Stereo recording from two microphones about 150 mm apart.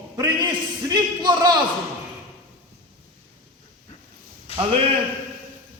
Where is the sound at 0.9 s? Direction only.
25° right (ahead or behind).